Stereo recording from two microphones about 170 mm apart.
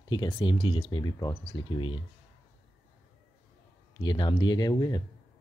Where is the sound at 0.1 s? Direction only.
30° left (ahead or behind).